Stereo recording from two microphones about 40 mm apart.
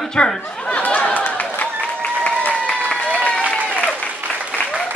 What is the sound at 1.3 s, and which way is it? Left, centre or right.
Applause, left.